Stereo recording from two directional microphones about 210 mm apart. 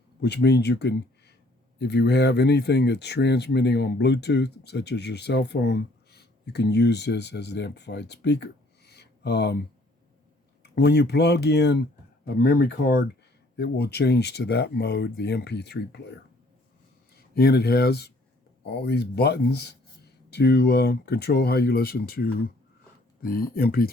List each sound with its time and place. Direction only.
0.2 s speech: 50° left (ahead or behind)
10.6 s speech: 55° left (ahead or behind)
17.3 s speech: 50° left (ahead or behind)